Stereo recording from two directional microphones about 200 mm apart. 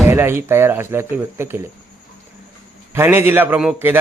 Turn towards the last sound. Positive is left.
turn(degrees=-10)  # may be behind; listen again after turning